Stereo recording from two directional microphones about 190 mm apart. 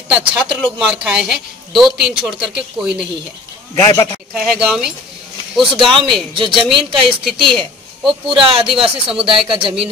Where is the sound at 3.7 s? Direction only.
15° left (ahead or behind).